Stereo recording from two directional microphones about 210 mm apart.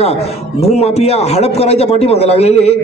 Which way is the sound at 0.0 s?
30° left (ahead or behind).